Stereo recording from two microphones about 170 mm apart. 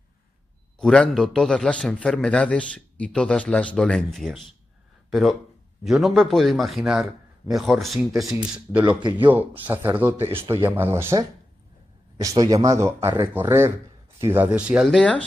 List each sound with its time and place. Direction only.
0.7 s a man's voice: 5° left (ahead or behind)
9.3 s a man's voice: 10° right (ahead or behind); by 15.2 s 5° left (ahead or behind)